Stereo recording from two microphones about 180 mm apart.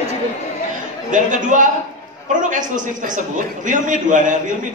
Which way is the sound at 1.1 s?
45° right (ahead or behind).